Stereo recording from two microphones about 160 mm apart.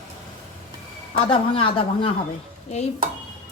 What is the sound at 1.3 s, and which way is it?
Speech, 35° left (ahead or behind).